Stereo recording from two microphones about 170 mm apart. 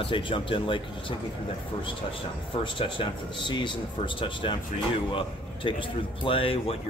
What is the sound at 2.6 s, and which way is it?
Speech, 30° left (ahead or behind).